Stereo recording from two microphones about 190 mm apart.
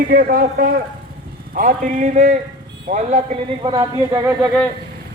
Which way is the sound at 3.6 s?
20° right (ahead or behind).